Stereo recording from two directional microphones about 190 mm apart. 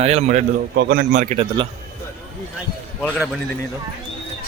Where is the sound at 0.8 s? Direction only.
50° right (ahead or behind); by 1.6 s 30° right (ahead or behind).